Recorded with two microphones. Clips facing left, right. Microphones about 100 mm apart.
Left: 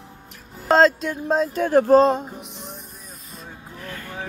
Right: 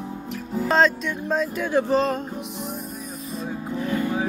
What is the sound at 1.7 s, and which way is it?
Speech, 45° left (ahead or behind).